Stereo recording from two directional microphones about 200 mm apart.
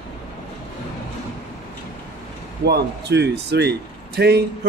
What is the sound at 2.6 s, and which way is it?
Speech, 55° right (ahead or behind).